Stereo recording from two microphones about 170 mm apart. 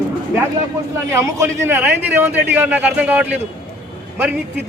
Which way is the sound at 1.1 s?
15° right (ahead or behind).